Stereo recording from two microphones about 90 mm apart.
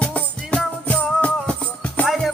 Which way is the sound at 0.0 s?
15° left (ahead or behind).